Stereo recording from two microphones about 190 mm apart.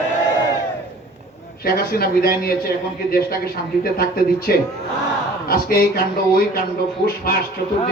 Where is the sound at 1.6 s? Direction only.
55° left (ahead or behind).